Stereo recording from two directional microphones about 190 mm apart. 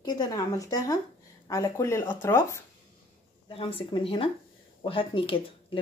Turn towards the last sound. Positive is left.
turn(degrees=30)  # may be behind; listen again after turning